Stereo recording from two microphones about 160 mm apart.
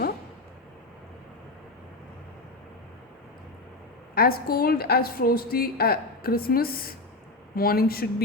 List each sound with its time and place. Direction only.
4.1 s a woman's voice: 70° left (ahead or behind)